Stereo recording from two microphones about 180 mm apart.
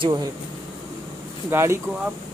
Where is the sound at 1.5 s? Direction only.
15° right (ahead or behind).